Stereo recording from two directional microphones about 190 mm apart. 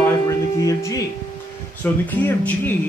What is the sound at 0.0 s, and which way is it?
Music, 15° left (ahead or behind).